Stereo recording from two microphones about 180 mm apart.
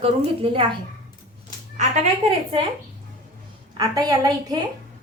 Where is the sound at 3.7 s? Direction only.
20° right (ahead or behind).